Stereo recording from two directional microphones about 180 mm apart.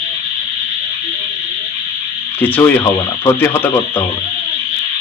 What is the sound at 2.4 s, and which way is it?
Speech, 10° left (ahead or behind).